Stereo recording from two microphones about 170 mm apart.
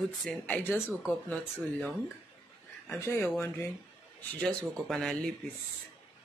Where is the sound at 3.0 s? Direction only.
10° left (ahead or behind).